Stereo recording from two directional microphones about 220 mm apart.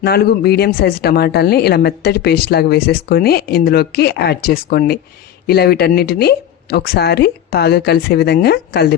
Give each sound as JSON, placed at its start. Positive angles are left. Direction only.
{"t": 0.0, "sound": "speech", "side_deg": 45}